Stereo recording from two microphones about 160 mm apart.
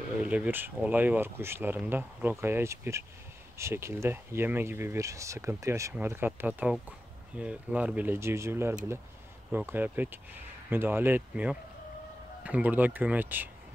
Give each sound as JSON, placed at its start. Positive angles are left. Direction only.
{"t": 0.2, "sound": "speech", "side_deg": -10}